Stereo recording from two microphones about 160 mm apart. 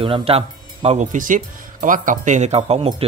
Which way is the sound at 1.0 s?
55° right (ahead or behind).